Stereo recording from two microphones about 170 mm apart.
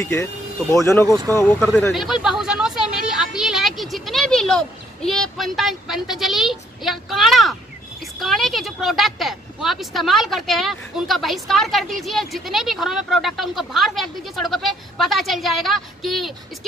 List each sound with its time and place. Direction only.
0.0 s speech: 15° left (ahead or behind)
1.6 s a woman's voice: 5° left (ahead or behind)